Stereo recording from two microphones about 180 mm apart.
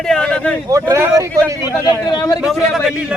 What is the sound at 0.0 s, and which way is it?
Speech, 5° left (ahead or behind).